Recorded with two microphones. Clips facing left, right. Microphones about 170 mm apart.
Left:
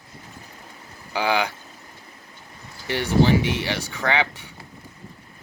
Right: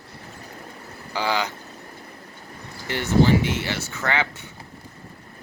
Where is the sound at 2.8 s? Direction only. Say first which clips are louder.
Even; 15° left (ahead or behind).